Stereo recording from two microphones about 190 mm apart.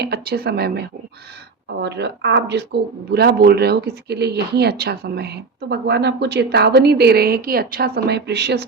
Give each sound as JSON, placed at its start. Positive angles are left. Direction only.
{"t": 0.0, "sound": "speech", "side_deg": -55}